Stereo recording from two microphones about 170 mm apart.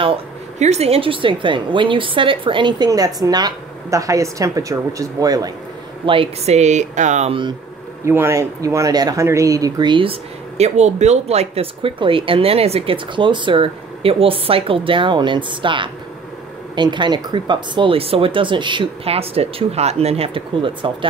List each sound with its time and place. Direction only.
0.0 s a woman's voice: 35° right (ahead or behind); by 5.5 s 20° right (ahead or behind)
6.0 s speech: 35° right (ahead or behind)
8.0 s a woman's voice: 15° right (ahead or behind)
10.6 s speech: 40° right (ahead or behind)